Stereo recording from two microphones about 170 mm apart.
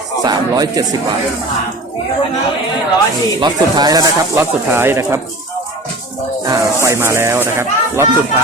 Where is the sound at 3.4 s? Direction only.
25° right (ahead or behind).